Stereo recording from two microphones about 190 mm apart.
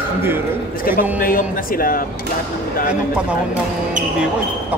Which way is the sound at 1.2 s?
50° left (ahead or behind).